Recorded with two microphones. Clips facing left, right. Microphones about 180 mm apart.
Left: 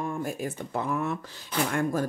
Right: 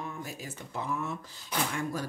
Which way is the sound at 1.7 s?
55° left (ahead or behind).